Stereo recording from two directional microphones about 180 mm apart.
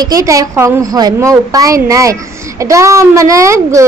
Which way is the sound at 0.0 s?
20° right (ahead or behind).